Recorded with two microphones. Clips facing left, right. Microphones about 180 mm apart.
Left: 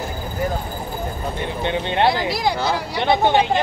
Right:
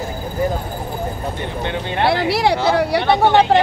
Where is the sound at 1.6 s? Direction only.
20° left (ahead or behind).